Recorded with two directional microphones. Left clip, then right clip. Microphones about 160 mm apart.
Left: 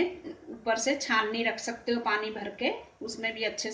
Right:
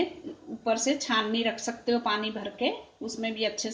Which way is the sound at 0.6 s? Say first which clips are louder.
Right 1 dB; 60° right (ahead or behind).